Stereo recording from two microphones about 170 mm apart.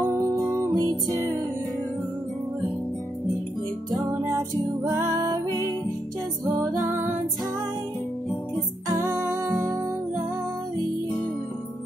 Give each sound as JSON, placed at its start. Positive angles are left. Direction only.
{"t": 0.4, "sound": "music", "side_deg": -15}
{"t": 1.0, "sound": "music", "side_deg": 15}
{"t": 4.8, "sound": "music", "side_deg": -15}
{"t": 8.8, "sound": "music", "side_deg": -15}